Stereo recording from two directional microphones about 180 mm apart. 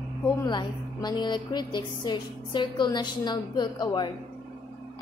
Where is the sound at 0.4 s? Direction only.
25° left (ahead or behind).